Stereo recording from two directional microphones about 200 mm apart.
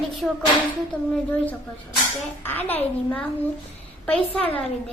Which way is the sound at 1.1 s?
10° left (ahead or behind).